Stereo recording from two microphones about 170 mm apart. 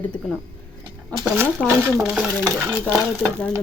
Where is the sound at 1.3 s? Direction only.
15° right (ahead or behind).